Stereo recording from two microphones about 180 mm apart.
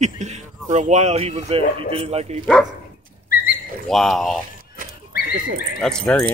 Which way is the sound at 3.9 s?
Centre (ahead or behind).